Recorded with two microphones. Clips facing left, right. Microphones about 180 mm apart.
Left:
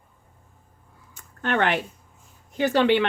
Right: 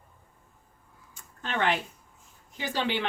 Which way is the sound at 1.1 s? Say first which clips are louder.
Left 8 dB; 65° left (ahead or behind).